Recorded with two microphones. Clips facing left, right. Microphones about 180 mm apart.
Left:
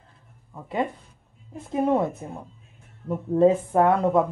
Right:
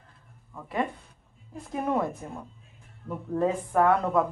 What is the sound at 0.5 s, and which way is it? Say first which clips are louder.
Speech: left 3 dB; 25° left (ahead or behind).